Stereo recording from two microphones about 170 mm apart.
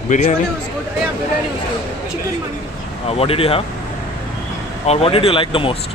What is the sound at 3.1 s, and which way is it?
Speech, 35° left (ahead or behind).